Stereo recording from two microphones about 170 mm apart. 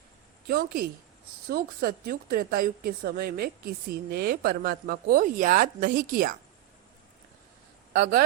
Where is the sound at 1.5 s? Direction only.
65° right (ahead or behind).